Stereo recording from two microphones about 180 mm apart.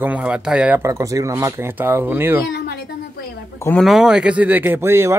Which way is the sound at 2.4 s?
65° left (ahead or behind).